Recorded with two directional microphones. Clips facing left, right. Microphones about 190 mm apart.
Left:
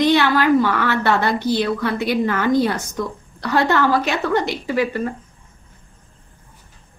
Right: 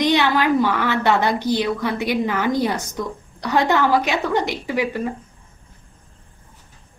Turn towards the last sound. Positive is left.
turn(degrees=-10)  # may be behind; listen again after turning